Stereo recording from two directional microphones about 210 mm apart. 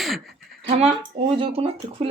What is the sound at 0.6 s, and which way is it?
A woman's voice, 30° right (ahead or behind).